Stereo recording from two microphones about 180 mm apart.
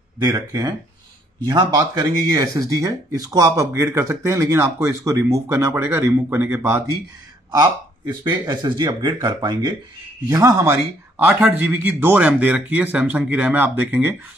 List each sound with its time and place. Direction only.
0.2 s speech: 20° right (ahead or behind)
8.1 s speech: 25° right (ahead or behind)